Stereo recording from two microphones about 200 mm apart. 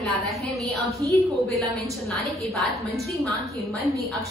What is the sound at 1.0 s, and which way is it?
Speech, 20° right (ahead or behind).